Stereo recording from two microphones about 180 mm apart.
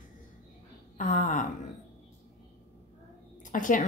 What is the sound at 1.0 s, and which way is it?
Speech, 45° left (ahead or behind).